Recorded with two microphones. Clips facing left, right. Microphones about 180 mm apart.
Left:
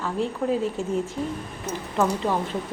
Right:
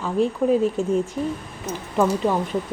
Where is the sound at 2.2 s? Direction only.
15° right (ahead or behind).